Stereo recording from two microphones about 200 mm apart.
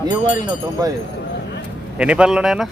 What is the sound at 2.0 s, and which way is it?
Speech, 5° right (ahead or behind).